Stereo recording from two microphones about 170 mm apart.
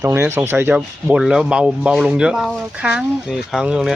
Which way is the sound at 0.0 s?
15° right (ahead or behind).